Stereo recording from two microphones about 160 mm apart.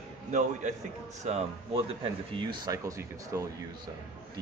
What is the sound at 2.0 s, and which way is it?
Speech, 30° right (ahead or behind).